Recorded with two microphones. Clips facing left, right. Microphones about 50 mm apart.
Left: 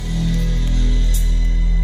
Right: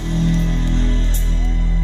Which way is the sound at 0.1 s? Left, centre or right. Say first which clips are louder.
Right 3 dB; right.